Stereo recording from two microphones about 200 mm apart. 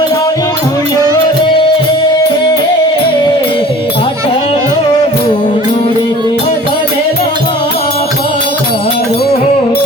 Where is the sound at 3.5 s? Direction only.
25° left (ahead or behind).